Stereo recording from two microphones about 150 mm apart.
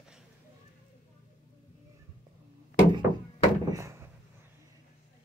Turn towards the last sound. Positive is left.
turn(degrees=-20)  # may be behind; listen again after turning